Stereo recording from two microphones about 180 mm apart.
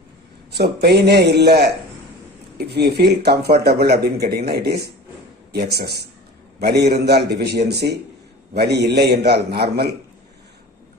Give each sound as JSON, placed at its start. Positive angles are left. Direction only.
{"t": 0.5, "sound": "speech", "side_deg": -65}